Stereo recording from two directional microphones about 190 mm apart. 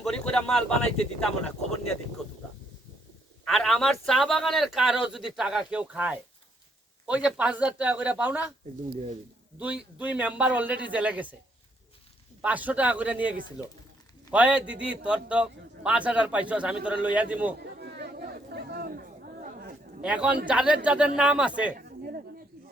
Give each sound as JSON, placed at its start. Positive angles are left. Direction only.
{"t": 0.0, "sound": "a man's voice", "side_deg": 5}
{"t": 3.4, "sound": "a man's voice", "side_deg": 5}
{"t": 9.6, "sound": "a man's voice", "side_deg": -10}
{"t": 12.4, "sound": "a man's voice", "side_deg": -10}
{"t": 17.7, "sound": "chatter", "side_deg": -60}
{"t": 20.0, "sound": "a man's voice", "side_deg": -5}
{"t": 21.8, "sound": "chop", "side_deg": -50}